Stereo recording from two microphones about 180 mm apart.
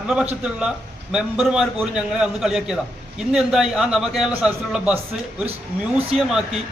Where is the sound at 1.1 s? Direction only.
Centre (ahead or behind).